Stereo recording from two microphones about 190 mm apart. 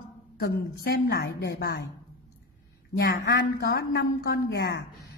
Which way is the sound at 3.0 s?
55° left (ahead or behind).